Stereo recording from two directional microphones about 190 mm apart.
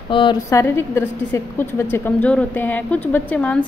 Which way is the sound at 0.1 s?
25° left (ahead or behind).